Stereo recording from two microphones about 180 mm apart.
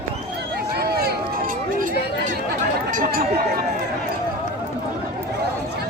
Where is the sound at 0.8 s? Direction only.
60° right (ahead or behind).